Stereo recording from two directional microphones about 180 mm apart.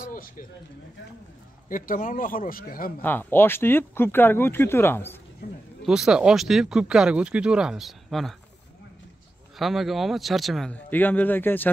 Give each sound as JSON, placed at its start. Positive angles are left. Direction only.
{"t": 0.1, "sound": "speech", "side_deg": 50}
{"t": 1.7, "sound": "speech", "side_deg": 50}
{"t": 3.0, "sound": "speech", "side_deg": 10}
{"t": 5.9, "sound": "speech", "side_deg": -5}
{"t": 9.6, "sound": "speech", "side_deg": 0}